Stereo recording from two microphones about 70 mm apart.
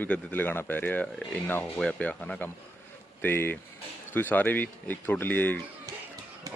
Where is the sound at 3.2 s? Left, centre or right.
Left.